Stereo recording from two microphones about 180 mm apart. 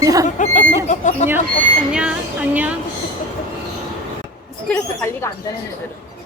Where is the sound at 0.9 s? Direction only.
40° left (ahead or behind).